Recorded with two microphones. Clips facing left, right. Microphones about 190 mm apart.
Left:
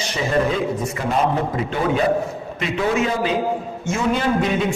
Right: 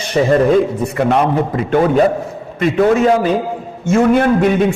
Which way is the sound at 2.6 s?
50° right (ahead or behind).